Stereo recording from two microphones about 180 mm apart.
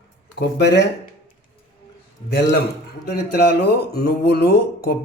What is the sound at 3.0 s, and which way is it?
Speech, 60° left (ahead or behind).